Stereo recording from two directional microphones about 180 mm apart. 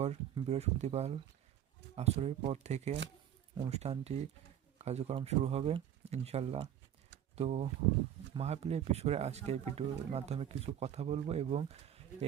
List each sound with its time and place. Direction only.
0.0 s speech: 35° right (ahead or behind)